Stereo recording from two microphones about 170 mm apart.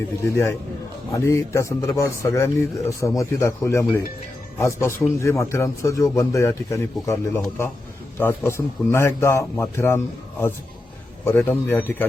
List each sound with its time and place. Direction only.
0.3 s a man's voice: 15° left (ahead or behind)
11.3 s a man's voice: 10° left (ahead or behind)